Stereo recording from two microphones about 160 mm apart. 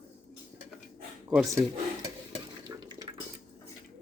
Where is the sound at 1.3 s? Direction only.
5° right (ahead or behind).